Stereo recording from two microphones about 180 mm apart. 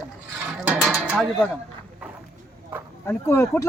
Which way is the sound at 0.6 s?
5° right (ahead or behind).